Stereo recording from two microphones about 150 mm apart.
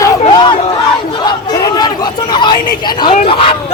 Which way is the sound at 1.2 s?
30° left (ahead or behind).